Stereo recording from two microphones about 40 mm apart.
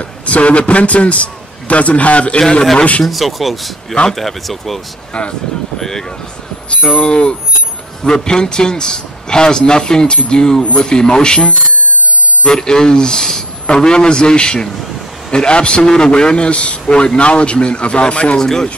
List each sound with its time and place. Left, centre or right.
0.0 s a man's voice: left
3.1 s speech: centre
5.8 s speech: centre
6.8 s a man's voice: left; by 18.7 s centre